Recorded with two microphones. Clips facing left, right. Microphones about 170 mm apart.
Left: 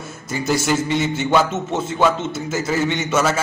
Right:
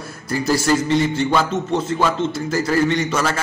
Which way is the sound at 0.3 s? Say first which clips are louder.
Right 2 dB; centre (ahead or behind).